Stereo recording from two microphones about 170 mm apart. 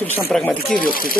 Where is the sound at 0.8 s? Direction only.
60° left (ahead or behind).